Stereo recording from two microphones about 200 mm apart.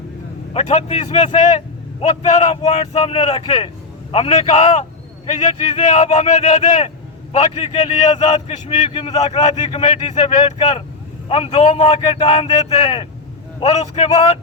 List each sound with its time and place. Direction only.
0.5 s a man's voice: 30° left (ahead or behind)